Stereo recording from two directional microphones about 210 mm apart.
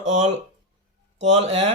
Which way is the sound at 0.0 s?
35° right (ahead or behind).